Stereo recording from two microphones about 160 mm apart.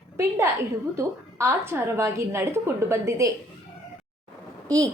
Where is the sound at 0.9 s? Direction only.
15° right (ahead or behind).